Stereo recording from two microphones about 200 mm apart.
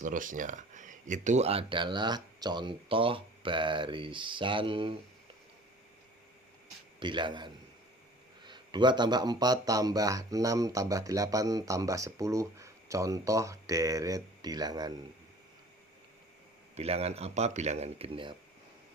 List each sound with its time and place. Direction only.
0.0 s speech: 40° right (ahead or behind); by 4.9 s 25° right (ahead or behind)
7.0 s speech: 25° right (ahead or behind)
16.7 s speech: 30° right (ahead or behind)